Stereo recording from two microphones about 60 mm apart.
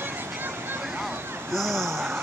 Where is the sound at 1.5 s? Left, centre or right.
Centre.